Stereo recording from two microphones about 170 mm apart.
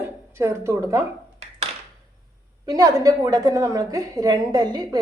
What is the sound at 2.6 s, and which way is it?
A woman's voice, 20° right (ahead or behind).